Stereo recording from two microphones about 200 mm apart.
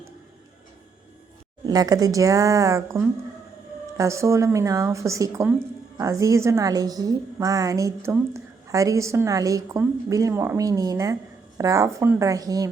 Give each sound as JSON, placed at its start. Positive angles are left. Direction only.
{"t": 1.6, "sound": "a woman's voice", "side_deg": -20}